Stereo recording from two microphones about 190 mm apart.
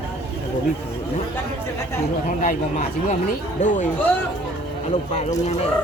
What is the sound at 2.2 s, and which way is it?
Speech, 40° left (ahead or behind).